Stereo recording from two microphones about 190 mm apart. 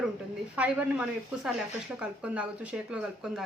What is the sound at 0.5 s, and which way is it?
Speech, 5° right (ahead or behind).